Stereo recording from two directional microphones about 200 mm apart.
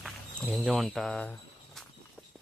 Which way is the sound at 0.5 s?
Centre (ahead or behind).